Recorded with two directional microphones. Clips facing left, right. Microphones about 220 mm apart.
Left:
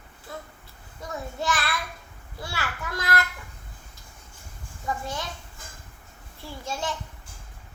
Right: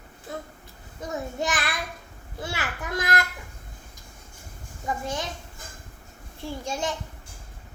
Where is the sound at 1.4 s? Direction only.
15° right (ahead or behind).